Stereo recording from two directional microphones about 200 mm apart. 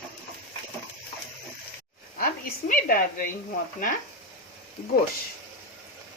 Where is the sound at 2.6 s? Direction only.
45° left (ahead or behind).